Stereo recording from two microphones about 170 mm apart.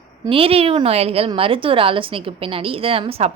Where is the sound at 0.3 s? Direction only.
35° right (ahead or behind).